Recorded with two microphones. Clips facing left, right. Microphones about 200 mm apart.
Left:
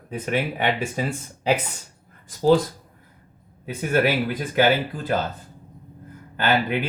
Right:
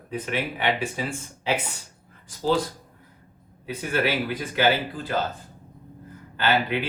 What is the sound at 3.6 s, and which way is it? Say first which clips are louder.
Speech: left 4 dB; 45° left (ahead or behind).